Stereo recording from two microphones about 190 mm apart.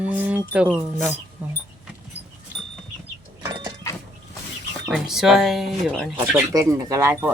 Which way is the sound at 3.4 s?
20° right (ahead or behind).